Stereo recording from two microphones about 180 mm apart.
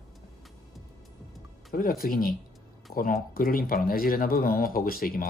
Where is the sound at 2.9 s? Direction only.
50° left (ahead or behind).